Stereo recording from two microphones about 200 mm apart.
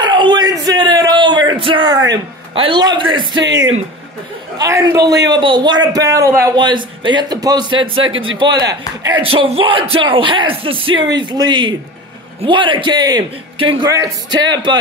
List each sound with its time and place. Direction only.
0.0 s bellow: 25° right (ahead or behind)
1.6 s a man's voice: 25° right (ahead or behind)
3.4 s speech: 65° right (ahead or behind)
4.6 s a man's voice: 15° right (ahead or behind)